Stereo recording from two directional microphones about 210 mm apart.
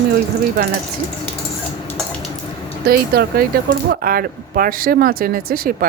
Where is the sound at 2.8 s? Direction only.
50° right (ahead or behind).